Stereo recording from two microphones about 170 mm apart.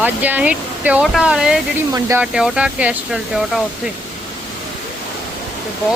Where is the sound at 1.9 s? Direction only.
20° right (ahead or behind).